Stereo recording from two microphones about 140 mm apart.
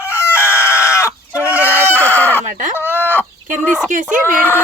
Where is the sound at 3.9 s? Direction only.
70° right (ahead or behind).